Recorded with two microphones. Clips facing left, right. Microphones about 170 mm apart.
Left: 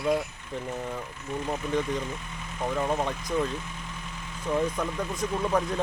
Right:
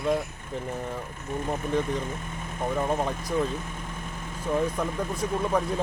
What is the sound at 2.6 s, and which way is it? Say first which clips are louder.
Speech: right 1 dB; 10° right (ahead or behind).